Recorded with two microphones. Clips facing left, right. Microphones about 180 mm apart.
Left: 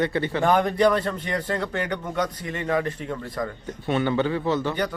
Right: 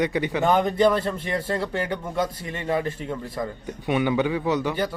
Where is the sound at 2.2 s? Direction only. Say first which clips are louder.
Even; 30° right (ahead or behind).